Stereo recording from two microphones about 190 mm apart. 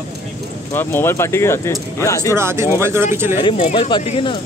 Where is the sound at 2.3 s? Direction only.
15° right (ahead or behind).